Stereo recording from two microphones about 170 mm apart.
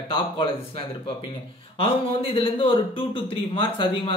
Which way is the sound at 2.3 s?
30° left (ahead or behind).